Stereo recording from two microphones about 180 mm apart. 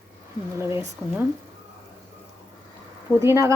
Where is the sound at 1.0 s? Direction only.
10° right (ahead or behind).